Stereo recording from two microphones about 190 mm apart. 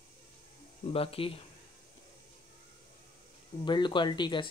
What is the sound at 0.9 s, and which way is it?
Speech, 30° left (ahead or behind).